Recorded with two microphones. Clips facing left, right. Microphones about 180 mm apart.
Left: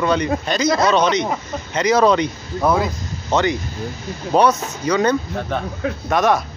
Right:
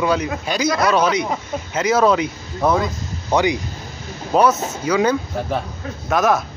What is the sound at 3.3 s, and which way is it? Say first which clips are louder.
Speech: right 1 dB; 15° right (ahead or behind).